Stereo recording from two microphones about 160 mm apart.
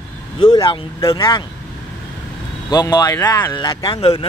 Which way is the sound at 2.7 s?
25° left (ahead or behind).